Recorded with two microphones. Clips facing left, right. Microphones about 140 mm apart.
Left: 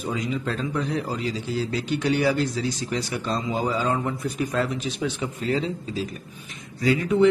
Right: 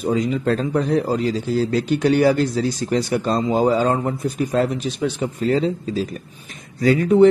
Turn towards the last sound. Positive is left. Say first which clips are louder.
# right 6 dB
turn(degrees=-45)  # may be behind; listen again after turning